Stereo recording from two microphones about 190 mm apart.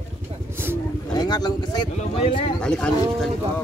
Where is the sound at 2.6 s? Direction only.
5° left (ahead or behind).